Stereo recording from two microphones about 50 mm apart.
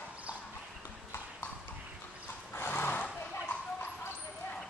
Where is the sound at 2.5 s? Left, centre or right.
Left.